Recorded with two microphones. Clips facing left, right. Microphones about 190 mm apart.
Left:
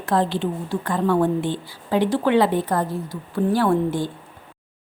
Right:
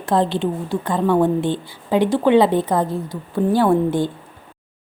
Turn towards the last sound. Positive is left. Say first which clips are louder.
# right 3 dB
turn(degrees=-20)  # may be behind; listen again after turning